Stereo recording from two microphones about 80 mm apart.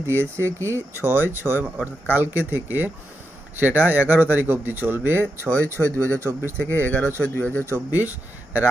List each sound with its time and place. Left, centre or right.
0.1 s speech: right
6.6 s speech: left
7.6 s speech: right